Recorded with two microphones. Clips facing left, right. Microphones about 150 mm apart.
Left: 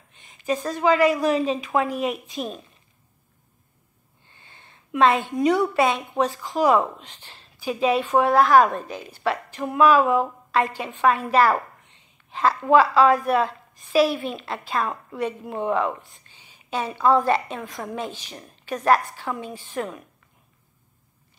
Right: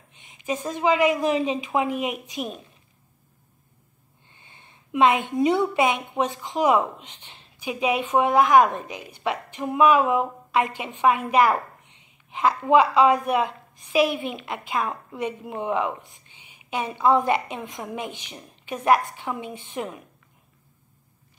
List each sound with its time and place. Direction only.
0.2 s a woman's voice: 20° right (ahead or behind)
4.4 s a woman's voice: 15° right (ahead or behind)